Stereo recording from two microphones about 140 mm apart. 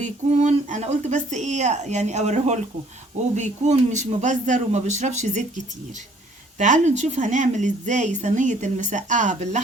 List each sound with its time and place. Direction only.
0.0 s speech: 60° right (ahead or behind)